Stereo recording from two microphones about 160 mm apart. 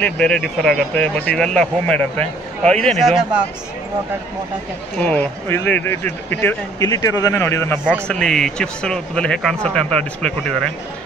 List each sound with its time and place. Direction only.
0.0 s speech: 5° left (ahead or behind)
4.9 s speech: 10° left (ahead or behind)
6.8 s a man's voice: 20° left (ahead or behind)
8.1 s speech: 5° left (ahead or behind)